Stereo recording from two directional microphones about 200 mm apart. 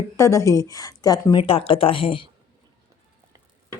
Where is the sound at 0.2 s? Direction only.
15° left (ahead or behind).